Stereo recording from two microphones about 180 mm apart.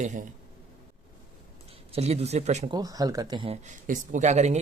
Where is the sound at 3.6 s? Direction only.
40° right (ahead or behind).